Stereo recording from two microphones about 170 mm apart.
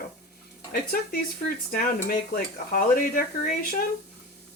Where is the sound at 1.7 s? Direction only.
60° left (ahead or behind).